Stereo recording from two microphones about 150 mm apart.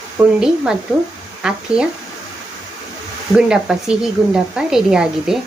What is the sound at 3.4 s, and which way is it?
Speech, 5° right (ahead or behind).